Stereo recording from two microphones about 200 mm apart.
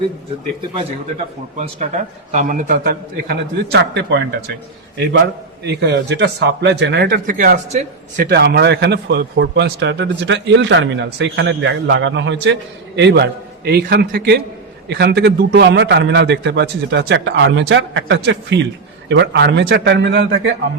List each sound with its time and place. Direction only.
1.5 s a man's voice: 35° right (ahead or behind); by 4.2 s 55° right (ahead or behind)
5.6 s a man's voice: 55° right (ahead or behind)